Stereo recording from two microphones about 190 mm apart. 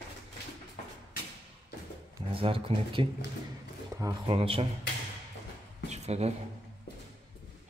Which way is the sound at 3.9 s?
15° right (ahead or behind).